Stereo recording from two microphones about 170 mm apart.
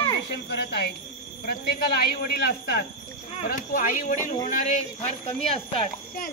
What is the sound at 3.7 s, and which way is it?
Speech, 50° left (ahead or behind).